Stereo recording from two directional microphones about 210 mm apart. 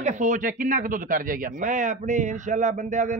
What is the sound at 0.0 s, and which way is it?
A man's voice, 35° right (ahead or behind).